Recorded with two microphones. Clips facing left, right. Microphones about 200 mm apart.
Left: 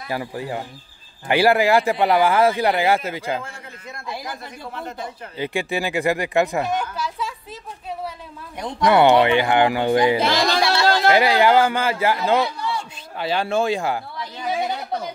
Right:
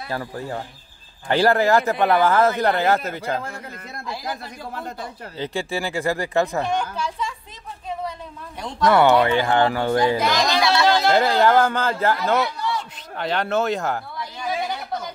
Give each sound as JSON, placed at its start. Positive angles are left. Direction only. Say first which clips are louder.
{"t": 0.1, "sound": "speech", "louder": "left 2 dB", "side_deg": 15}
{"t": 5.4, "sound": "speech", "louder": "left 2 dB", "side_deg": 15}
{"t": 8.5, "sound": "speech", "louder": "left 1 dB", "side_deg": 20}
{"t": 10.1, "sound": "speech", "louder": "left 1 dB", "side_deg": 30}
{"t": 11.3, "sound": "a man's voice", "louder": "left 1 dB", "side_deg": 10}